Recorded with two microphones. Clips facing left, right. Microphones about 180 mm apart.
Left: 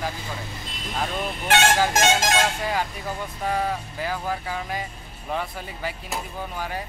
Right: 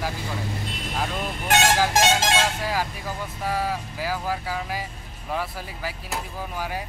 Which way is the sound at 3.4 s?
5° right (ahead or behind).